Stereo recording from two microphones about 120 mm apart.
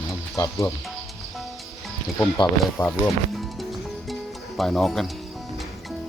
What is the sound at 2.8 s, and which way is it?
Speech, 35° left (ahead or behind).